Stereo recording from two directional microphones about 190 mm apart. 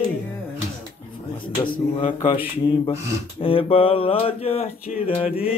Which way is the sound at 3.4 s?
30° left (ahead or behind).